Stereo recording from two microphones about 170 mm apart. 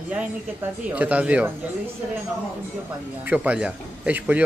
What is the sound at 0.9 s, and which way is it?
Speech, 10° right (ahead or behind).